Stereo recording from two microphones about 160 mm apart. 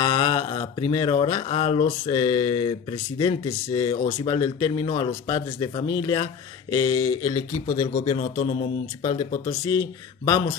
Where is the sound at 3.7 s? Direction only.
35° left (ahead or behind).